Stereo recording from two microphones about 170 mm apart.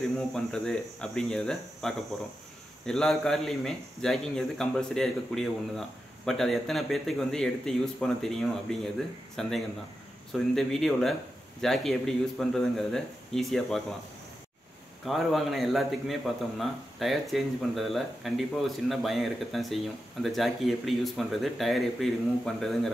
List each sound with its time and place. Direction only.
0.3 s a man's voice: 5° left (ahead or behind)
15.0 s a man's voice: centre (ahead or behind)